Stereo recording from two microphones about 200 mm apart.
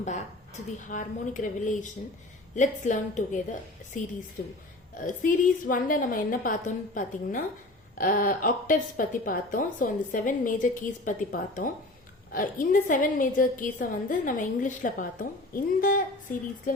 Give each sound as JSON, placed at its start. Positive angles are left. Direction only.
{"t": 0.0, "sound": "a woman's voice", "side_deg": 35}